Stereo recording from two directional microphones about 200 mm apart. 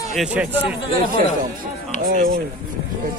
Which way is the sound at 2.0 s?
45° right (ahead or behind).